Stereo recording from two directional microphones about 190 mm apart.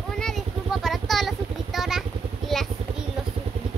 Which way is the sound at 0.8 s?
Centre (ahead or behind).